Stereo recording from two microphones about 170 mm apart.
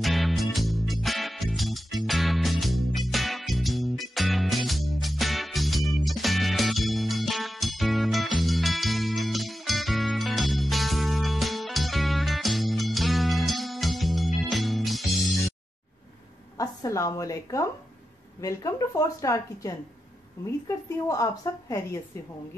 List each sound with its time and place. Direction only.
0.0 s music: centre (ahead or behind)
16.5 s a woman's voice: 20° left (ahead or behind)